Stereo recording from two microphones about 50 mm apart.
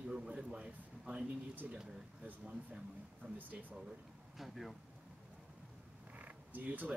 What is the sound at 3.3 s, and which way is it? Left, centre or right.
Speech, right.